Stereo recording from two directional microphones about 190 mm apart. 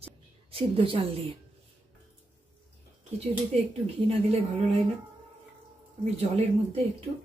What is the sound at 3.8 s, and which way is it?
Speech, 30° right (ahead or behind).